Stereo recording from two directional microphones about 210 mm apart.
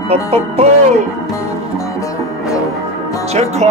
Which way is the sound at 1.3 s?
15° left (ahead or behind).